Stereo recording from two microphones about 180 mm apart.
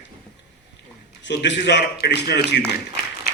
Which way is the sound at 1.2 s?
75° left (ahead or behind).